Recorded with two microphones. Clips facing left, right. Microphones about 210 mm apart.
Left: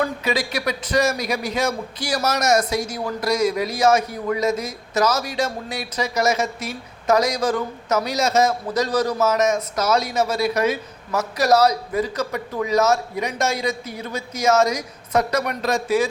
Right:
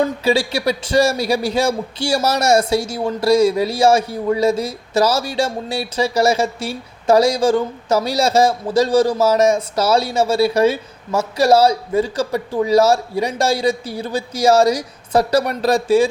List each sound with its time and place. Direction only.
0.0 s speech: 30° right (ahead or behind)